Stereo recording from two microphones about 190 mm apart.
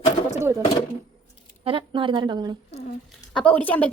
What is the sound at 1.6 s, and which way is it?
Speech, 25° right (ahead or behind).